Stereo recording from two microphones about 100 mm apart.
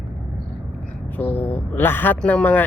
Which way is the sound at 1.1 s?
20° left (ahead or behind).